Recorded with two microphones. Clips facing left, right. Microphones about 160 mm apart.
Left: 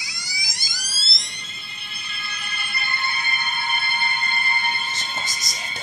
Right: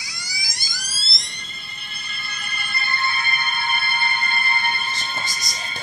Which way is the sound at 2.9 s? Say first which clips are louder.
Right 4 dB; 15° left (ahead or behind).